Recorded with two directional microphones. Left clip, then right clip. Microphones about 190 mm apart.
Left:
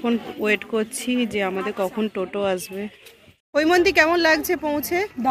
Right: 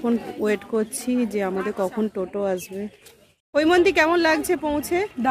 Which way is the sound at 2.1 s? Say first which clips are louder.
Left 1 dB; centre (ahead or behind).